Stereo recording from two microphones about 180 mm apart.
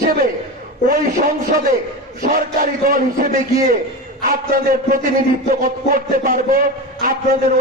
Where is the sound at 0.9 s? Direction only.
50° right (ahead or behind).